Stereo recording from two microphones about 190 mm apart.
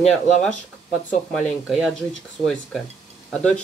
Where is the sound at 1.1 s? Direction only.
Centre (ahead or behind).